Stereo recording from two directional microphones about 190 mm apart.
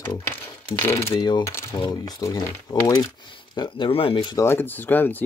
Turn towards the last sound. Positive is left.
turn(degrees=10)  # may be behind; listen again after turning